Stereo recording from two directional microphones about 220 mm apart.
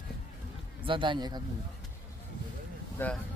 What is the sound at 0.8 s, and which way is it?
Speech, 20° right (ahead or behind).